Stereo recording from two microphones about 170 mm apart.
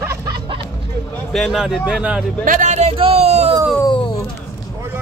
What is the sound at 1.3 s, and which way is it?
Speech, centre (ahead or behind).